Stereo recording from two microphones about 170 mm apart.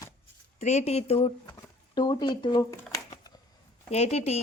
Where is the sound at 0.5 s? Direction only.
40° left (ahead or behind).